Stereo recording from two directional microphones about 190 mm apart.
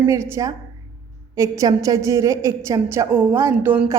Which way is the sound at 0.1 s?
15° right (ahead or behind).